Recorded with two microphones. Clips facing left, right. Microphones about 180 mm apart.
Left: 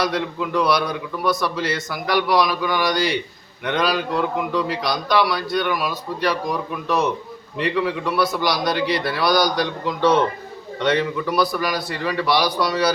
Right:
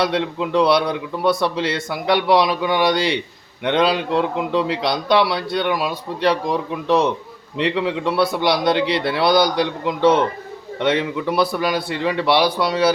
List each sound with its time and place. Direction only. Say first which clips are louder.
0.0 s a man's voice: right 3 dB; 25° right (ahead or behind)